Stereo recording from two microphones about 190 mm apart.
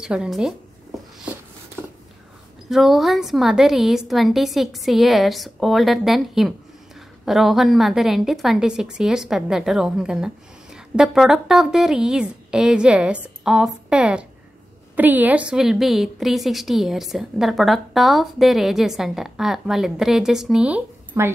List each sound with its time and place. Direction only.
0.0 s a woman's voice: 5° right (ahead or behind)
2.7 s a woman's voice: centre (ahead or behind)